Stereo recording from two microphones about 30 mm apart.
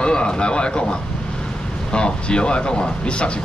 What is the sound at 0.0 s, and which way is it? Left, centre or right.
Speech, left.